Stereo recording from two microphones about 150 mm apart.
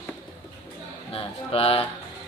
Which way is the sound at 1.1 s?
40° left (ahead or behind).